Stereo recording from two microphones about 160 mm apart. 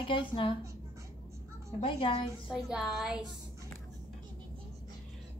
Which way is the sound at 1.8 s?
35° left (ahead or behind).